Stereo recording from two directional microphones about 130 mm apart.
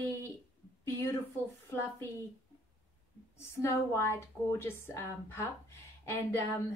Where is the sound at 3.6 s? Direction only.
20° left (ahead or behind).